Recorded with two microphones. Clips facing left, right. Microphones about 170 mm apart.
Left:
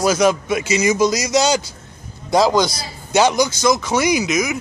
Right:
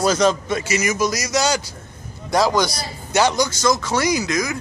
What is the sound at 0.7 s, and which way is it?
Speech, 25° left (ahead or behind).